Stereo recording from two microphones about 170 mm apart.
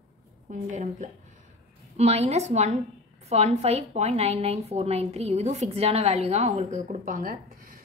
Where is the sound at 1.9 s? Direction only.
40° right (ahead or behind).